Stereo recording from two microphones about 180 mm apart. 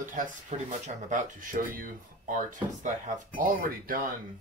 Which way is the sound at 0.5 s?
40° right (ahead or behind).